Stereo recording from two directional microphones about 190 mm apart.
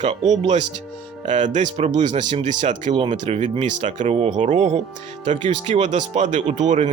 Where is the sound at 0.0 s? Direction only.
35° right (ahead or behind).